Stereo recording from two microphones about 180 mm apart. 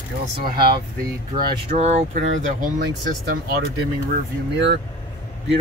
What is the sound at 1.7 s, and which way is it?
Speech, 35° right (ahead or behind).